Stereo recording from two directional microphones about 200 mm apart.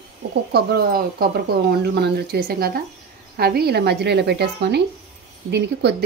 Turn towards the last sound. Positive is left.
turn(degrees=-55)  # may be behind; listen again after turning